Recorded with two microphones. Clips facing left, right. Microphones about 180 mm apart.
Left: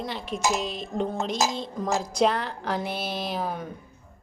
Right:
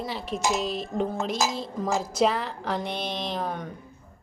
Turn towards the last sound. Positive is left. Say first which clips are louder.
# left 1 dB
turn(degrees=5)  # may be behind; listen again after turning